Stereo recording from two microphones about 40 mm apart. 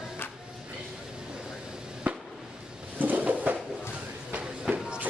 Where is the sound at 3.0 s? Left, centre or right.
Right.